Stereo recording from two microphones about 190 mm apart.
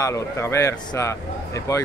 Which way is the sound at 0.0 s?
15° left (ahead or behind).